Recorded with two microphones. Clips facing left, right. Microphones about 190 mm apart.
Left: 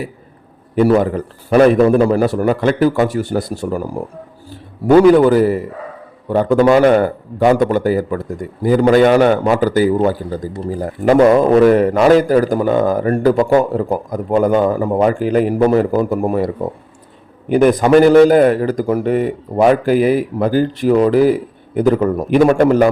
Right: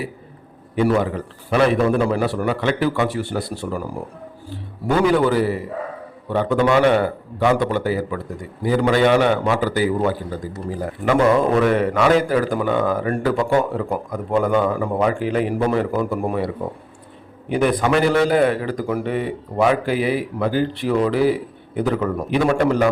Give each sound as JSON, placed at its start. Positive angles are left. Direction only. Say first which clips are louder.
{"t": 0.8, "sound": "a man's voice", "louder": "left 6 dB", "side_deg": 40}
{"t": 4.9, "sound": "a man's voice", "louder": "left 9 dB", "side_deg": 45}
{"t": 17.5, "sound": "a man's voice", "louder": "left 8 dB", "side_deg": 45}